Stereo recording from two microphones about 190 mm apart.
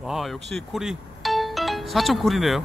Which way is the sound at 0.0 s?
Centre (ahead or behind).